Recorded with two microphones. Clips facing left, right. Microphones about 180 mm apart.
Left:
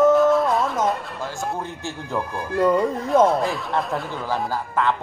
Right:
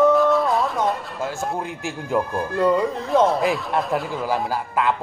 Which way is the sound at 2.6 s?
Centre (ahead or behind).